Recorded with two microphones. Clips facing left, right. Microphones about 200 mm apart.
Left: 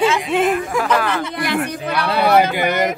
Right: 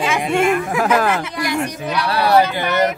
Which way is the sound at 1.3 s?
55° left (ahead or behind).